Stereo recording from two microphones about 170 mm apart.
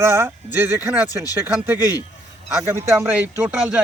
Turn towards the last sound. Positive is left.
turn(degrees=-10)  # may be behind; listen again after turning